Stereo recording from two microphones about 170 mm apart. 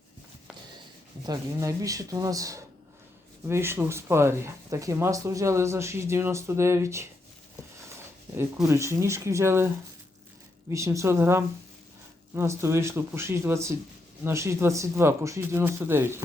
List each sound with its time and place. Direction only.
1.2 s speech: 20° right (ahead or behind)
8.6 s speech: 15° right (ahead or behind)